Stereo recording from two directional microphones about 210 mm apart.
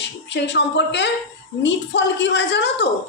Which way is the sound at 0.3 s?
55° left (ahead or behind).